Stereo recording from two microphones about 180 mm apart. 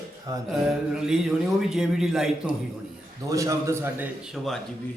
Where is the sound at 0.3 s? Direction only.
20° right (ahead or behind).